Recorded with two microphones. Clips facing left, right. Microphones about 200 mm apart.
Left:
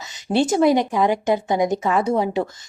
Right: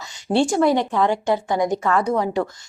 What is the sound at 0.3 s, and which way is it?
A woman's voice, 20° left (ahead or behind).